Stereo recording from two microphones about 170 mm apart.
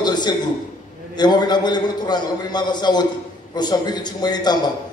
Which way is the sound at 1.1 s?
25° left (ahead or behind).